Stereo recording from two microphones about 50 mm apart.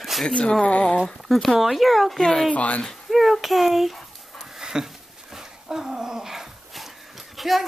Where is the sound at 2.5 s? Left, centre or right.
Left.